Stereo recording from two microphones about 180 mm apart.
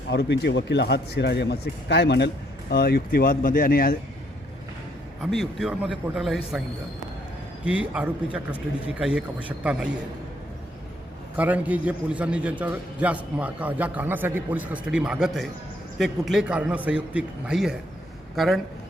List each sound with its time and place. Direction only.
0.1 s a man's voice: 70° left (ahead or behind); by 3.9 s 55° left (ahead or behind)
5.2 s a man's voice: centre (ahead or behind)
7.6 s a man's voice: 5° right (ahead or behind)
11.3 s a man's voice: 10° right (ahead or behind)